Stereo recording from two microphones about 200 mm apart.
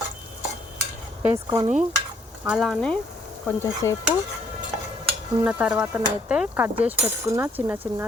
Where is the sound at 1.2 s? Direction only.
20° right (ahead or behind).